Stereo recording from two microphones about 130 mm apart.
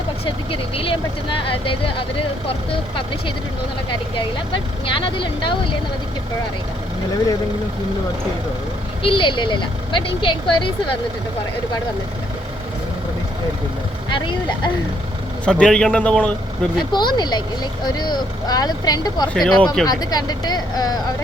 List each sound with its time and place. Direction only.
0.3 s speech: 45° left (ahead or behind)
4.5 s speech: 40° left (ahead or behind)
9.0 s speech: 40° left (ahead or behind)
14.1 s speech: 40° left (ahead or behind)
15.4 s a man's voice: 5° left (ahead or behind)
16.9 s speech: 35° left (ahead or behind)
19.3 s speech: 5° left (ahead or behind)
19.9 s speech: 30° left (ahead or behind)